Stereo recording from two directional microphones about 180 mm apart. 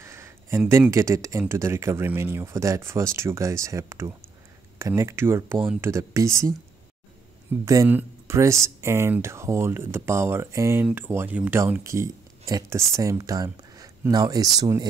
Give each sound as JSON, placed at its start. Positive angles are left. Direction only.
{"t": 0.0, "sound": "speech", "side_deg": -15}
{"t": 7.6, "sound": "speech", "side_deg": -15}